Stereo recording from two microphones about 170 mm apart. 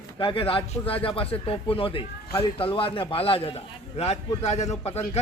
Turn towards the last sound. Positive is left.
turn(degrees=40)  # may be behind; listen again after turning